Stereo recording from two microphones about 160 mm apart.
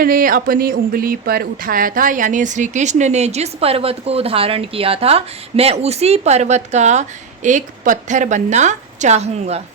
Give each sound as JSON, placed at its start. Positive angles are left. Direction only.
{"t": 0.0, "sound": "speech", "side_deg": -60}